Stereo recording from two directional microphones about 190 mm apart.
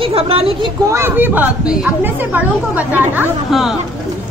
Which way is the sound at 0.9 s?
10° right (ahead or behind).